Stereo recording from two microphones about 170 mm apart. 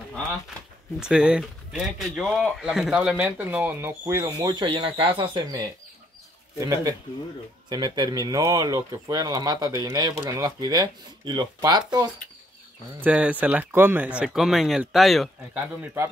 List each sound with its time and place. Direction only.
0.9 s speech: 5° right (ahead or behind); by 11.8 s 25° right (ahead or behind)
13.0 s speech: 10° right (ahead or behind)
15.5 s speech: 10° right (ahead or behind)